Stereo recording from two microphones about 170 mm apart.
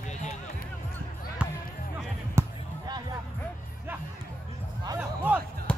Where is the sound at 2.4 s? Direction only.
15° right (ahead or behind).